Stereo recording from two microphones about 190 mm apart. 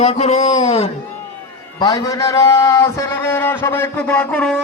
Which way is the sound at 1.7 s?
20° left (ahead or behind).